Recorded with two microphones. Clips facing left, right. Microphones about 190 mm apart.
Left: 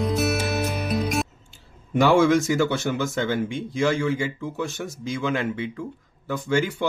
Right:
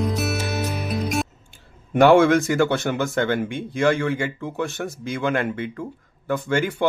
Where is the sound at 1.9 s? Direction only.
60° right (ahead or behind).